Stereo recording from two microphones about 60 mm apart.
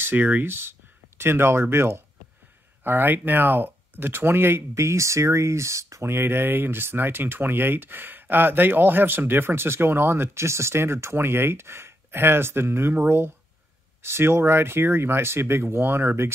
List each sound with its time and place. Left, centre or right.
0.0 s speech: right
4.7 s speech: right
6.0 s speech: right